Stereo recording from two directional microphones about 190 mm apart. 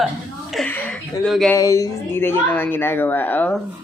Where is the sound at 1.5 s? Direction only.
15° left (ahead or behind).